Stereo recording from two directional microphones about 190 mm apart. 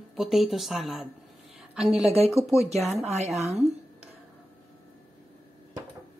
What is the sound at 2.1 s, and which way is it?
Speech, 35° right (ahead or behind).